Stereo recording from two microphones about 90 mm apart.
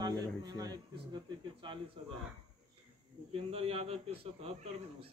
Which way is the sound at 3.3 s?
90° right.